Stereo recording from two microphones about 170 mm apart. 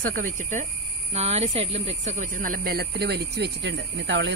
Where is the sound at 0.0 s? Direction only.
50° right (ahead or behind).